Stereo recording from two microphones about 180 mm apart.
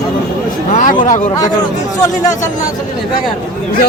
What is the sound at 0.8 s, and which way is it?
Speech, 45° left (ahead or behind).